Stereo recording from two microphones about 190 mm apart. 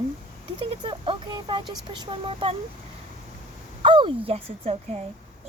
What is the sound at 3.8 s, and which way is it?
Speech, 25° right (ahead or behind).